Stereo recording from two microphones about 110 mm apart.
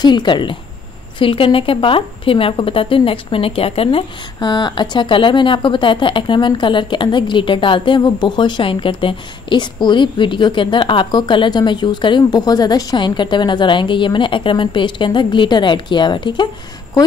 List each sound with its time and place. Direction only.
0.0 s speech: 45° left (ahead or behind)